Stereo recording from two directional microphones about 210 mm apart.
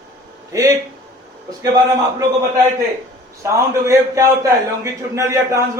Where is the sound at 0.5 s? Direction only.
15° right (ahead or behind).